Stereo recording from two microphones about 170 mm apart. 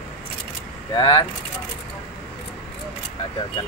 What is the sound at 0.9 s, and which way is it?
Speech, 30° left (ahead or behind).